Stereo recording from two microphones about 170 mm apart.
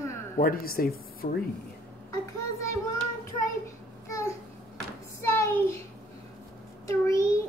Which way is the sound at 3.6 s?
15° left (ahead or behind).